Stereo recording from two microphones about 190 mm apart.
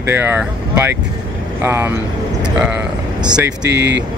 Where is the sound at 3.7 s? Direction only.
65° right (ahead or behind).